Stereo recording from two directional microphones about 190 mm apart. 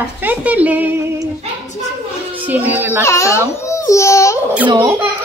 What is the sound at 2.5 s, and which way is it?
Speech, 10° right (ahead or behind).